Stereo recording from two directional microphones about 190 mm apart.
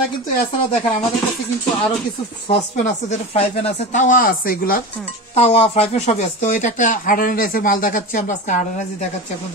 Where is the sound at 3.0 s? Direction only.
35° left (ahead or behind); by 4.8 s 50° left (ahead or behind).